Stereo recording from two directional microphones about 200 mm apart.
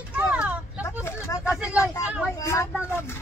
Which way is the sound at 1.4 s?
5° right (ahead or behind).